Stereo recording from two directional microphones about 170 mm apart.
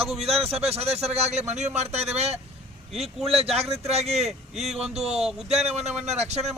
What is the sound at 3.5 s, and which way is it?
Speech, 35° right (ahead or behind).